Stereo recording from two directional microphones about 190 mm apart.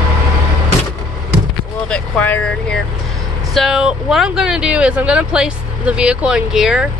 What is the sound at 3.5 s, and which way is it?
Speech, centre (ahead or behind).